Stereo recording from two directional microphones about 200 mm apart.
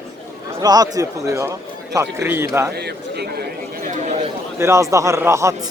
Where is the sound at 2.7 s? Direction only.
55° right (ahead or behind).